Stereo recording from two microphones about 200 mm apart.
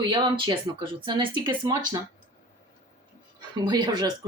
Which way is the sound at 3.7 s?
20° right (ahead or behind).